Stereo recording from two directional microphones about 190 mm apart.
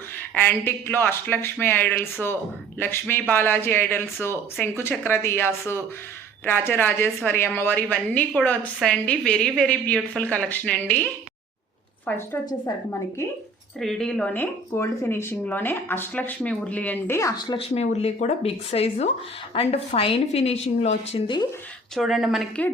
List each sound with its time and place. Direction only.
0.3 s speech: 10° left (ahead or behind)
13.7 s a woman's voice: 5° left (ahead or behind); by 21.4 s 25° left (ahead or behind)
21.9 s speech: centre (ahead or behind)